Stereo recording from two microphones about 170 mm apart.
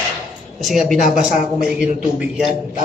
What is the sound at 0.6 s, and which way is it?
Speech, centre (ahead or behind).